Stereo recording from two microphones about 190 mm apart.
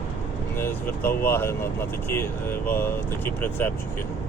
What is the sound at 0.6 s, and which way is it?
Speech, 10° left (ahead or behind).